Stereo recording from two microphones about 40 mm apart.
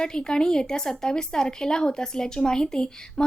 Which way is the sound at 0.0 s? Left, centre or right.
Left.